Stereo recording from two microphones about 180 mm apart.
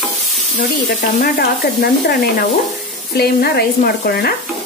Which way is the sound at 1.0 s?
55° left (ahead or behind).